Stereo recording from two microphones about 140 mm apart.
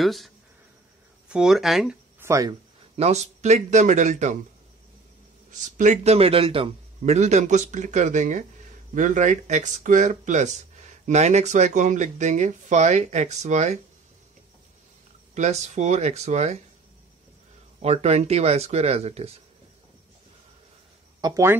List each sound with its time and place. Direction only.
0.0 s speech: centre (ahead or behind)
1.3 s speech: 5° right (ahead or behind)
2.1 s speech: 20° right (ahead or behind)
3.0 s speech: 50° right (ahead or behind)
5.5 s speech: 60° right (ahead or behind); by 6.7 s 40° right (ahead or behind)
7.0 s speech: 55° right (ahead or behind)
15.3 s speech: 55° right (ahead or behind)
17.8 s speech: 50° right (ahead or behind)
21.2 s speech: 20° right (ahead or behind)